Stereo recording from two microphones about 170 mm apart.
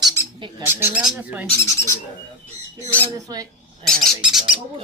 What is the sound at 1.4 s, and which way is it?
Speech, 15° left (ahead or behind).